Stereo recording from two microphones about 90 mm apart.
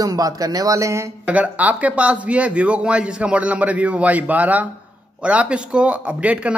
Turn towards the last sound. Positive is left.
turn(degrees=-15)  # may be behind; listen again after turning